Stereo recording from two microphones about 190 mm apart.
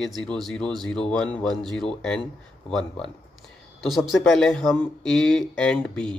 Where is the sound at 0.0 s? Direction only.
Centre (ahead or behind).